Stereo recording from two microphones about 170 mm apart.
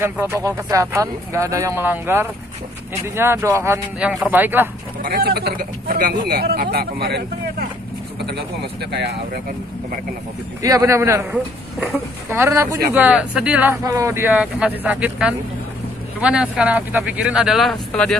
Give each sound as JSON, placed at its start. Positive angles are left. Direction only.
{"t": 0.0, "sound": "speech", "side_deg": -15}
{"t": 5.0, "sound": "speech", "side_deg": -60}
{"t": 8.9, "sound": "speech", "side_deg": -75}
{"t": 10.6, "sound": "speech", "side_deg": -20}
{"t": 12.3, "sound": "speech", "side_deg": -15}